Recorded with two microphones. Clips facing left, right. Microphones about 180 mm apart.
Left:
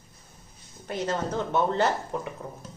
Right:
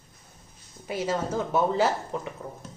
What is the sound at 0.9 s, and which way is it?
Speech, 5° right (ahead or behind).